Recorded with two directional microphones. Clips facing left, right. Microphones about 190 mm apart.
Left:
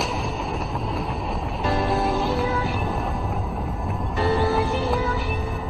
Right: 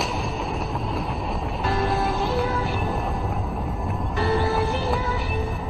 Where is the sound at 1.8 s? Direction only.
Centre (ahead or behind).